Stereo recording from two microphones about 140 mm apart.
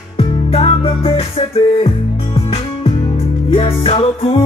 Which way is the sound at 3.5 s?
45° left (ahead or behind).